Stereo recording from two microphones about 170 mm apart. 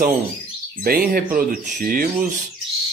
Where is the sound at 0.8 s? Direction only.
60° right (ahead or behind).